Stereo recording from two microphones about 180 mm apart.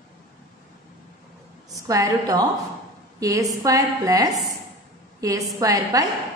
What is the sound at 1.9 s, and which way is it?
A woman's voice, 20° right (ahead or behind).